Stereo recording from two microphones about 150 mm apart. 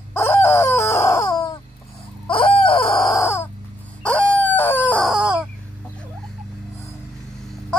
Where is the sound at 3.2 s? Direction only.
15° left (ahead or behind).